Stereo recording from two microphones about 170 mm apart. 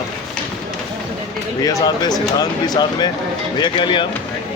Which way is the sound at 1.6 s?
20° left (ahead or behind).